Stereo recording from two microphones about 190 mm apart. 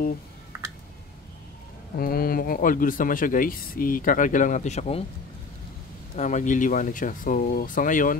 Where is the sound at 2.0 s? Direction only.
50° left (ahead or behind); by 5.0 s 35° left (ahead or behind).